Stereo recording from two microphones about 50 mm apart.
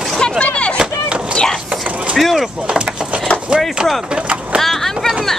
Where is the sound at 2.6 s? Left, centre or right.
Centre.